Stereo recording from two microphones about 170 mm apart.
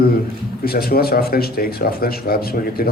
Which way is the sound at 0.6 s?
60° left (ahead or behind).